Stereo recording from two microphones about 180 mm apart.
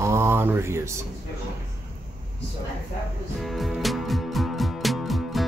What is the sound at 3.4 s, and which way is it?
Music, centre (ahead or behind).